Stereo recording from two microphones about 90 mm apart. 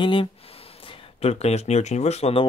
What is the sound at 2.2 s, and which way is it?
Speech, 90° left.